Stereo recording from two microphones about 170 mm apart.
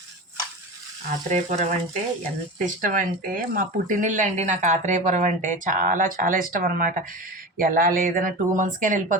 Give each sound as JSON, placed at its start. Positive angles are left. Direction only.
{"t": 1.3, "sound": "speech", "side_deg": -45}